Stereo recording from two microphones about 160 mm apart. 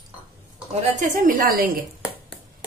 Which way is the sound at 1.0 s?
55° right (ahead or behind).